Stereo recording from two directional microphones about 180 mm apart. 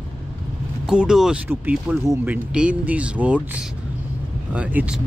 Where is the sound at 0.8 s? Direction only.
5° right (ahead or behind).